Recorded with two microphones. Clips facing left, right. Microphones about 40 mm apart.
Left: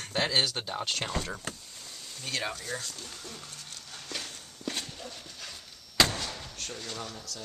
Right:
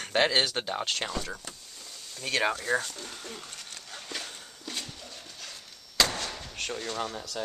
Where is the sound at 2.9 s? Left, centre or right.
Right.